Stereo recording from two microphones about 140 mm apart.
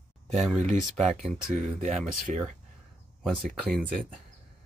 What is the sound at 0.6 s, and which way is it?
Speech, 55° right (ahead or behind).